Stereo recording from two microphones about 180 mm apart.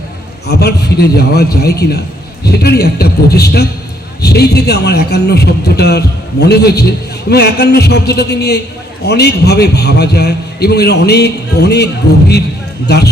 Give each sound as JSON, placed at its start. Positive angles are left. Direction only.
{"t": 0.4, "sound": "a man's voice", "side_deg": 65}
{"t": 12.9, "sound": "a man's voice", "side_deg": 65}